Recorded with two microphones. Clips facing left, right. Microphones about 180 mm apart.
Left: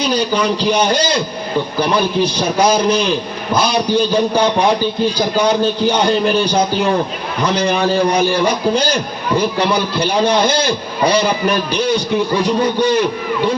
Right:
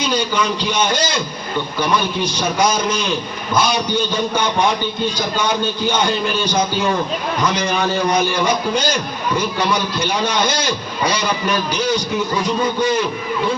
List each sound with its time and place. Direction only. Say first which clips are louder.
0.0 s a man's voice: left 3 dB; 35° left (ahead or behind)